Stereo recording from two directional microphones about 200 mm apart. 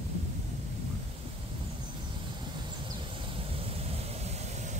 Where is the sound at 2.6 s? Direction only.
25° right (ahead or behind).